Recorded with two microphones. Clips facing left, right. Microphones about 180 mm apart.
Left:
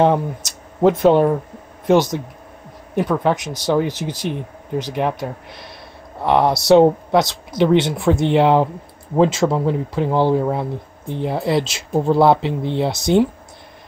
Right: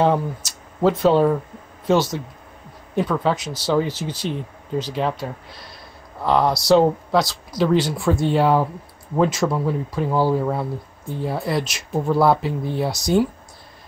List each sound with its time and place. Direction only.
0.8 s speech: 20° left (ahead or behind)